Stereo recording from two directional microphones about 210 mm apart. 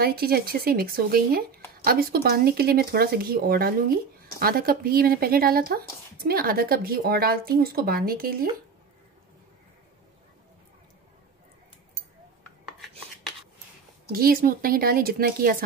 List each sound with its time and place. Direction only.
0.0 s speech: 45° right (ahead or behind)
14.1 s speech: 45° right (ahead or behind)